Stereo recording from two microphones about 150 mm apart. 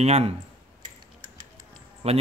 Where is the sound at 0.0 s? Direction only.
45° right (ahead or behind).